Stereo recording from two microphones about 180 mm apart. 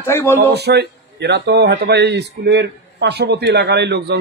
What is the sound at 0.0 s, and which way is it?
Speech, 15° left (ahead or behind).